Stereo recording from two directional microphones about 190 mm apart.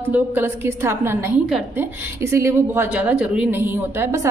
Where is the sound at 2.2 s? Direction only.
15° right (ahead or behind).